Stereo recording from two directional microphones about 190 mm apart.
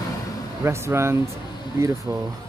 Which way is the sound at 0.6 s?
15° right (ahead or behind).